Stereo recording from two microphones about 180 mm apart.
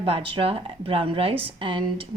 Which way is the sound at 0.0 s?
30° right (ahead or behind).